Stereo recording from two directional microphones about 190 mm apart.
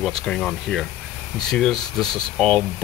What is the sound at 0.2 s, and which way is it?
Speech, 5° left (ahead or behind).